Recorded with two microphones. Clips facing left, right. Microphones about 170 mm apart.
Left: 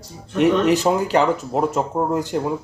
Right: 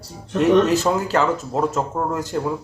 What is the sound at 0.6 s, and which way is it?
Speech, 15° left (ahead or behind).